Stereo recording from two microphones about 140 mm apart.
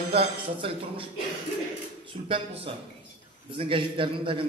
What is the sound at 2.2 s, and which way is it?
A man's voice, 40° right (ahead or behind).